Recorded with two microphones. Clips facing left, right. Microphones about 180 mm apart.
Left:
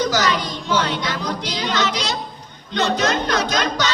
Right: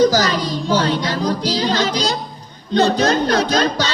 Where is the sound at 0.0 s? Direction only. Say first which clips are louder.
Right 5 dB; 35° right (ahead or behind).